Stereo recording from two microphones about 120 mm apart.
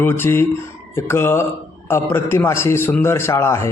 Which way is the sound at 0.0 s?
15° left (ahead or behind).